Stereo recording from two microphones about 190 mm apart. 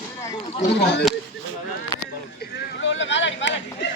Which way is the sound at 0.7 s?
65° left (ahead or behind).